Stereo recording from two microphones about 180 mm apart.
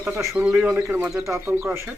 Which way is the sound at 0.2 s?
10° right (ahead or behind).